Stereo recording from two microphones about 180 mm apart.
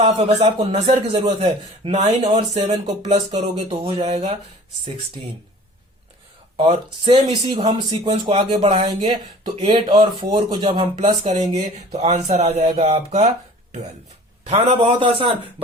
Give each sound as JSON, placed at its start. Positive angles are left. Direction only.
{"t": 0.0, "sound": "speech", "side_deg": -35}
{"t": 6.6, "sound": "speech", "side_deg": -35}
{"t": 14.4, "sound": "speech", "side_deg": -35}